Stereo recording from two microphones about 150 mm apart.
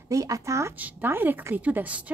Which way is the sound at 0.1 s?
20° right (ahead or behind).